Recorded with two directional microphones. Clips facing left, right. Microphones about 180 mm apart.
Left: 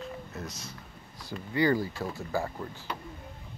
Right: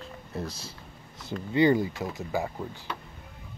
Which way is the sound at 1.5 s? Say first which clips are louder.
Right 4 dB; 20° right (ahead or behind).